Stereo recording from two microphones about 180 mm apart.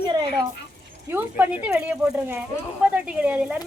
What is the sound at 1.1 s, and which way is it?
Speech, 10° right (ahead or behind).